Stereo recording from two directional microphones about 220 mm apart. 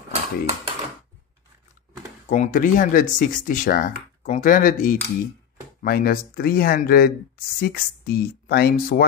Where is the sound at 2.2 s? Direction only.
35° left (ahead or behind).